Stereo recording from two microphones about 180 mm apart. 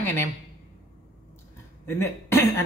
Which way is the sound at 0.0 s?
15° left (ahead or behind).